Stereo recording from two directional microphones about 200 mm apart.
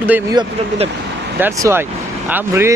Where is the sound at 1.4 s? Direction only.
10° right (ahead or behind).